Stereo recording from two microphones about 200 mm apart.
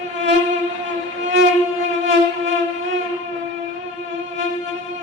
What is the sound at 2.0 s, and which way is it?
Music, 70° right (ahead or behind).